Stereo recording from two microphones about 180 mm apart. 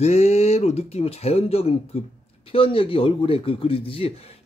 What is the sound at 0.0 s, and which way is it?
A man's voice, 40° left (ahead or behind).